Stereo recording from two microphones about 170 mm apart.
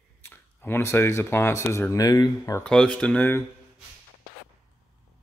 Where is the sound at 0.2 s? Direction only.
10° left (ahead or behind).